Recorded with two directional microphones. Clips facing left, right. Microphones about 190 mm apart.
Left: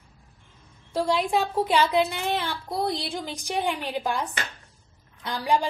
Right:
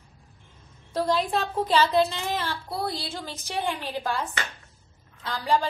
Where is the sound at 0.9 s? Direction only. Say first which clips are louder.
Left 1 dB; 10° left (ahead or behind).